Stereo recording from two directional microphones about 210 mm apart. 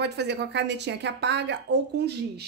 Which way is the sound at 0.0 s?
55° right (ahead or behind).